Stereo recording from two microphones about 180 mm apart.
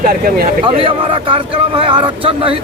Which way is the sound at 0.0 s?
50° right (ahead or behind).